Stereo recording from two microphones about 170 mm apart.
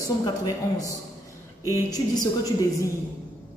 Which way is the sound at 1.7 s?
20° left (ahead or behind).